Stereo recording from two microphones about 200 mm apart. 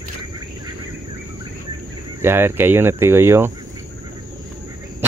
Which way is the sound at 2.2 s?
10° right (ahead or behind).